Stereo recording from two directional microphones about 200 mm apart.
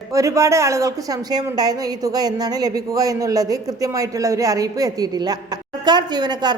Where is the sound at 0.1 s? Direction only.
15° right (ahead or behind).